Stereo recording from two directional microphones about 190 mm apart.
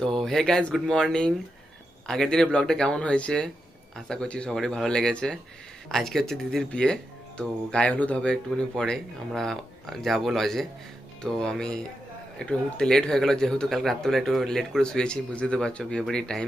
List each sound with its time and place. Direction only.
0.0 s speech: centre (ahead or behind)